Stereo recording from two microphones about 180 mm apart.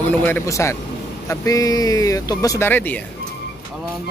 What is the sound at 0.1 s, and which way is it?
A man's voice, 10° left (ahead or behind).